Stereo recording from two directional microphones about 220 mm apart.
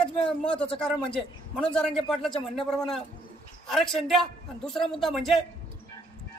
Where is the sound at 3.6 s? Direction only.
Centre (ahead or behind).